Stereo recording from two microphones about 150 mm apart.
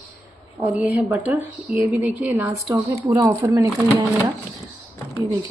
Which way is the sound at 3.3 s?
20° right (ahead or behind).